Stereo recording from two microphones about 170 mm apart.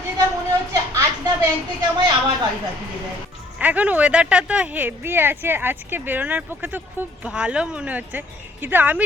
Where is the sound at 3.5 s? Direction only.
10° right (ahead or behind).